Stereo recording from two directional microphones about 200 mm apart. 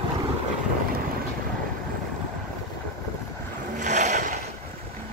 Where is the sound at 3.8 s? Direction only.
35° right (ahead or behind).